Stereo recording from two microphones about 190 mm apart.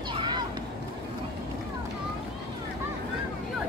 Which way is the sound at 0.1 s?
25° right (ahead or behind).